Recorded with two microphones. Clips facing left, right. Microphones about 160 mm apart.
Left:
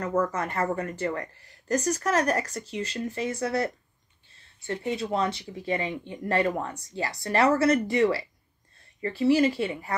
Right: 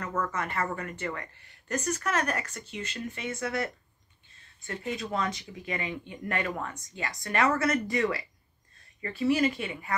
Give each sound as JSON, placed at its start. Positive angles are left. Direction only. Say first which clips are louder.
{"t": 0.0, "sound": "speech", "louder": "left 5 dB", "side_deg": 35}